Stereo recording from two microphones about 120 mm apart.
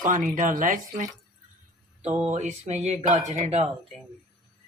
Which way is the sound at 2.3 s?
75° right (ahead or behind).